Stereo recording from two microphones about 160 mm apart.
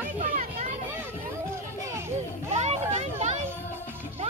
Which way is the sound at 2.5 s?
45° right (ahead or behind).